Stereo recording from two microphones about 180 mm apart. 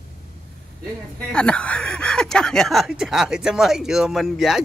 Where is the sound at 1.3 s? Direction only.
5° left (ahead or behind).